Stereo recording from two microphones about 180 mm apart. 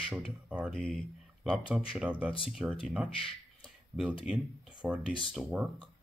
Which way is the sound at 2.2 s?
5° right (ahead or behind).